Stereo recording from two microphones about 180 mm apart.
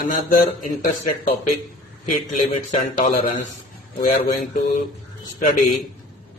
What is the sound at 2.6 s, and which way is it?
A man's voice, 45° left (ahead or behind).